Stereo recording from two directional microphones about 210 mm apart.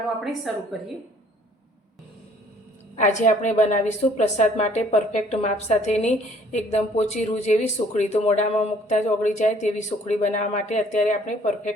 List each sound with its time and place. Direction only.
0.3 s a woman's voice: centre (ahead or behind)
2.9 s a woman's voice: 35° left (ahead or behind)